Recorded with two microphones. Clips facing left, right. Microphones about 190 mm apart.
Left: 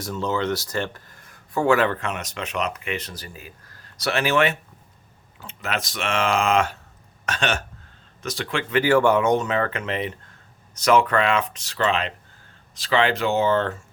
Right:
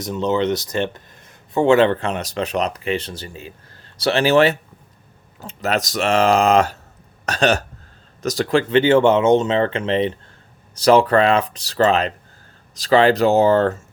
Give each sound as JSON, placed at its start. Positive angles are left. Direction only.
{"t": 0.0, "sound": "speech", "side_deg": -20}
{"t": 8.8, "sound": "speech", "side_deg": -25}